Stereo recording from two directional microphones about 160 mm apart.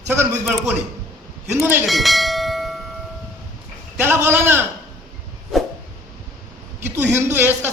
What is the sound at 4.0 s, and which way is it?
Speech, 15° right (ahead or behind).